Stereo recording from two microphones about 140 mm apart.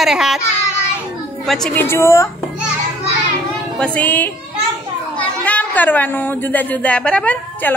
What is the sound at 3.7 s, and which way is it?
Speech, 10° left (ahead or behind).